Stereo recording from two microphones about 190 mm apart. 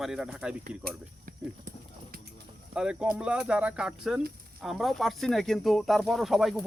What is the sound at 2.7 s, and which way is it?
Speech, 5° right (ahead or behind).